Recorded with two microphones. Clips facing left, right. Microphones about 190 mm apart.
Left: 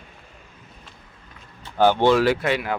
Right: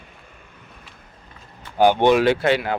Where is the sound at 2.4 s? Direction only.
30° right (ahead or behind).